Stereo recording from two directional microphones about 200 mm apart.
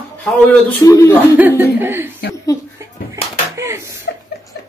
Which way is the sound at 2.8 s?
15° right (ahead or behind).